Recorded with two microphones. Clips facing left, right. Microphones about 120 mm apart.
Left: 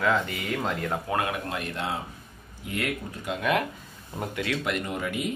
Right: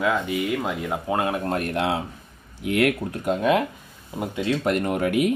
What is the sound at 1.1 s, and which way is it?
Speech, 25° right (ahead or behind).